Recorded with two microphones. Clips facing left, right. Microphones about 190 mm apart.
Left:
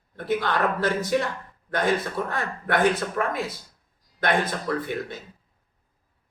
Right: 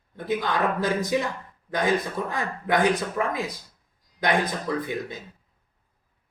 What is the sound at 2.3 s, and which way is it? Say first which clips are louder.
A woman's voice: right 3 dB; 15° right (ahead or behind).